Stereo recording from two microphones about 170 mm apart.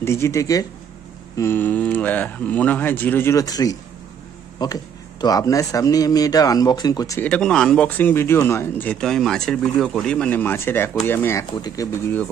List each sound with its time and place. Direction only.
0.0 s speech: 15° left (ahead or behind)
7.2 s speech: 5° left (ahead or behind)